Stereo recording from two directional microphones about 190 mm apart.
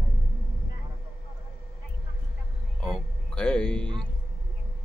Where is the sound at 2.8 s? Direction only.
5° left (ahead or behind).